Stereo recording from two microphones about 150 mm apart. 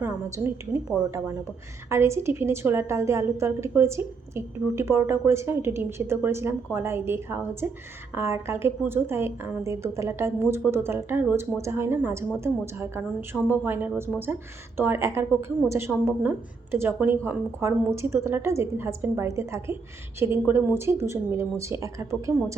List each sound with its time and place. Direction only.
0.0 s a woman's voice: 15° right (ahead or behind)